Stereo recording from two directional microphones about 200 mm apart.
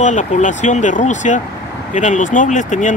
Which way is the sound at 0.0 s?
40° left (ahead or behind).